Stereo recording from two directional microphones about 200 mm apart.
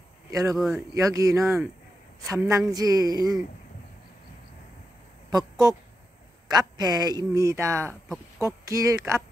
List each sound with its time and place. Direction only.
0.3 s speech: 15° right (ahead or behind)
0.6 s speech: centre (ahead or behind)
0.9 s speech: 15° right (ahead or behind)
2.7 s a sound: 20° right (ahead or behind)
5.3 s speech: 20° right (ahead or behind)
6.5 s a sound: 20° right (ahead or behind)
7.3 s speech: 15° right (ahead or behind)